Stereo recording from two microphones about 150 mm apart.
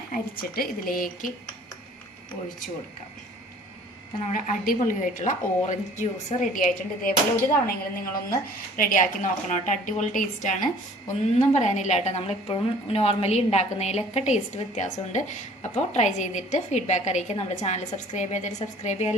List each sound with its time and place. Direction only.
0.1 s a woman's voice: 80° left
4.3 s a woman's voice: 60° left (ahead or behind)
7.5 s a woman's voice: 75° left (ahead or behind); by 19.1 s 50° left (ahead or behind)